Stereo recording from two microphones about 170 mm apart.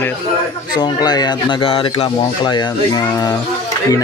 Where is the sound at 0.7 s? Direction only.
25° left (ahead or behind).